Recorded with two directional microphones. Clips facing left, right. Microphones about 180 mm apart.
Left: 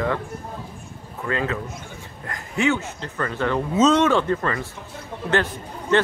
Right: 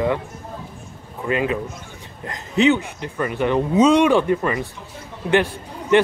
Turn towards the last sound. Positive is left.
turn(degrees=-15)  # may be behind; listen again after turning